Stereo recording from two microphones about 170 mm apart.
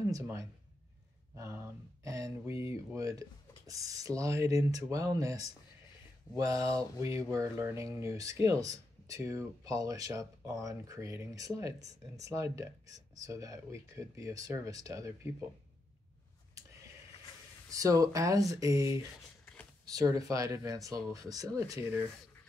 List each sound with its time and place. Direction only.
0.1 s speech: 15° right (ahead or behind)
17.6 s speech: 20° right (ahead or behind)
19.4 s a sound: 5° left (ahead or behind)
19.9 s speech: 20° right (ahead or behind)